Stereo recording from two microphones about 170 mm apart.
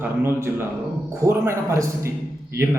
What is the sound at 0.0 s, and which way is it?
A man's voice, 15° right (ahead or behind).